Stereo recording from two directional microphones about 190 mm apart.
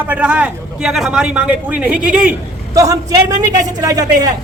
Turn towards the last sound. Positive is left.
turn(degrees=-20)  # may be behind; listen again after turning